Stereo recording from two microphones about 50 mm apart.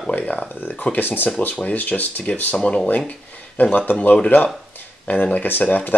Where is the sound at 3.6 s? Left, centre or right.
Left.